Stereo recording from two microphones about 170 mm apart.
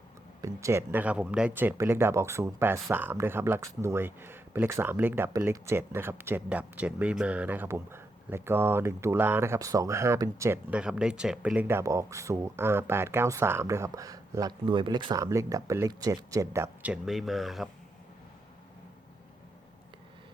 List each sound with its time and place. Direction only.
0.4 s speech: 15° right (ahead or behind)
10.7 s speech: 5° right (ahead or behind)
16.9 s speech: centre (ahead or behind)